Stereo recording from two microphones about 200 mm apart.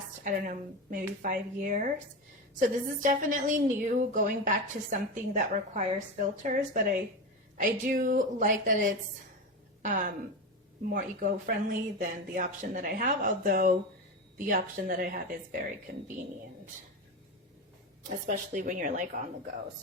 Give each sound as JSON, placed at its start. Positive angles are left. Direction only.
{"t": 0.2, "sound": "a woman's voice", "side_deg": -45}
{"t": 18.3, "sound": "a woman's voice", "side_deg": -40}